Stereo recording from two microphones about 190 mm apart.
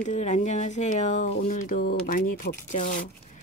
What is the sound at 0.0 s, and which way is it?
Speech, 40° left (ahead or behind).